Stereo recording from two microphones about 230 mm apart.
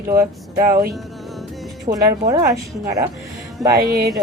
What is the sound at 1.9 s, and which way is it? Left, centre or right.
Speech, right.